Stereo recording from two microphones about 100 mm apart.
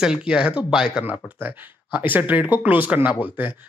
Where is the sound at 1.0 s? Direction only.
20° right (ahead or behind).